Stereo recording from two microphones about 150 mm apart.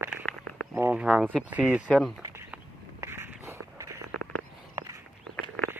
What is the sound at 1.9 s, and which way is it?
Speech, centre (ahead or behind).